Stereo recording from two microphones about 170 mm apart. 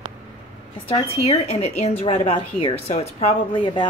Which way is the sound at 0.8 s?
35° left (ahead or behind).